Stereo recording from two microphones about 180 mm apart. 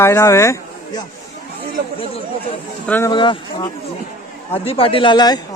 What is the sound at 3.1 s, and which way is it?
A man's voice, 25° left (ahead or behind).